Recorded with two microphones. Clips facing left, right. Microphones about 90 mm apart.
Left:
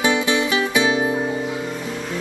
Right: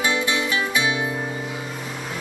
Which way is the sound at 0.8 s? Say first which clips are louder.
Left 5 dB; 35° left (ahead or behind).